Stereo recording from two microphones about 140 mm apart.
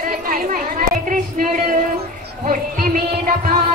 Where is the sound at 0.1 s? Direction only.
90° right; by 1.8 s 70° right (ahead or behind).